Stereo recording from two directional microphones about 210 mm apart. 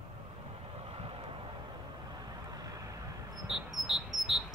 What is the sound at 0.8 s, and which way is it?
Vehicle, 30° right (ahead or behind).